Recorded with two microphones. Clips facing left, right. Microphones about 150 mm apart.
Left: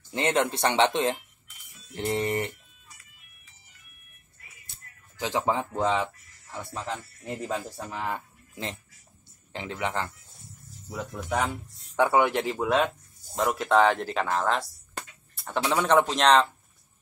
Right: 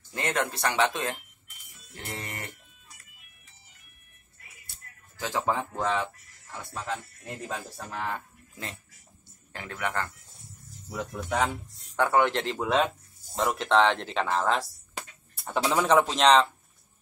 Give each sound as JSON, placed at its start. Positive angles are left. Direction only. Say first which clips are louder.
{"t": 0.1, "sound": "speech", "louder": "left 4 dB", "side_deg": 25}
{"t": 5.2, "sound": "speech", "louder": "left 2 dB", "side_deg": 15}
{"t": 7.7, "sound": "speech", "louder": "left 1 dB", "side_deg": 15}
{"t": 9.5, "sound": "speech", "louder": "left 2 dB", "side_deg": 20}
{"t": 10.9, "sound": "speech", "louder": "even", "side_deg": 0}
{"t": 12.0, "sound": "speech", "louder": "left 2 dB", "side_deg": 10}